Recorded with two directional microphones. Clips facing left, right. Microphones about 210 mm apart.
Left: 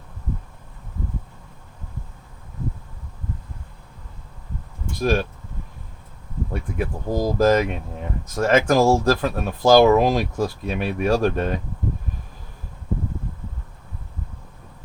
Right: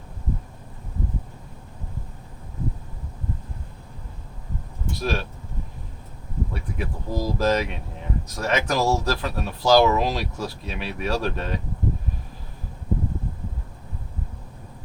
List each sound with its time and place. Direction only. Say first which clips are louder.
4.9 s speech: left 6 dB; 50° left (ahead or behind)
6.5 s speech: left 5 dB; 50° left (ahead or behind)